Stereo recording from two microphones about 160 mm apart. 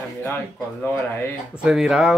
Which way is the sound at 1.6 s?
5° right (ahead or behind).